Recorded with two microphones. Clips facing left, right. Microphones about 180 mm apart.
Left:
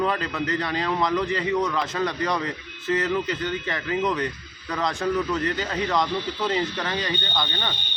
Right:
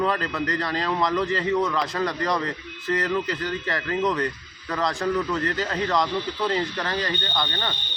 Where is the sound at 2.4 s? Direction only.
20° left (ahead or behind).